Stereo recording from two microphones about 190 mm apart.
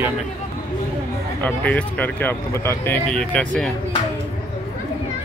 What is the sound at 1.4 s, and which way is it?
Speech, 10° left (ahead or behind).